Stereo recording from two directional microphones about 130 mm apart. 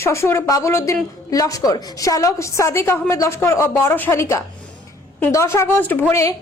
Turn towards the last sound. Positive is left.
turn(degrees=15)  # may be behind; listen again after turning